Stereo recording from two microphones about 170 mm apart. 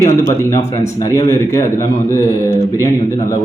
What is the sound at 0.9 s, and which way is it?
A man's voice, 20° left (ahead or behind).